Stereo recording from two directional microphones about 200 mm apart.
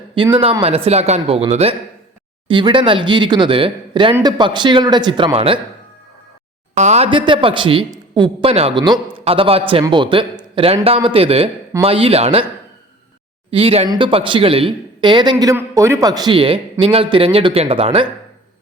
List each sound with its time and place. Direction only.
0.3 s a man's voice: 25° right (ahead or behind)
6.7 s a man's voice: 35° right (ahead or behind)
13.5 s a man's voice: 30° right (ahead or behind)